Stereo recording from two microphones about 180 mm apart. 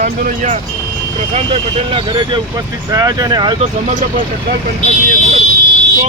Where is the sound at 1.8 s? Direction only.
30° right (ahead or behind).